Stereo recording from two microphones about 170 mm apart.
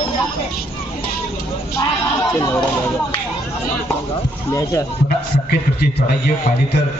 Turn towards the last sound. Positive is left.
turn(degrees=60)  # may be behind; listen again after turning